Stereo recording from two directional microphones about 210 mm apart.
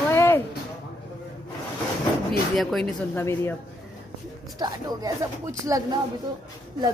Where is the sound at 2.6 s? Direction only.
Centre (ahead or behind).